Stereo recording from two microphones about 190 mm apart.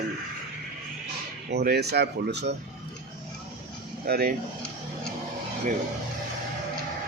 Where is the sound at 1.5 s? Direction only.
55° right (ahead or behind).